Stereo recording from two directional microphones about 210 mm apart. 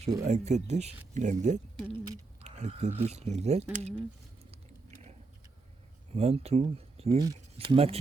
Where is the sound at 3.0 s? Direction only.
30° right (ahead or behind).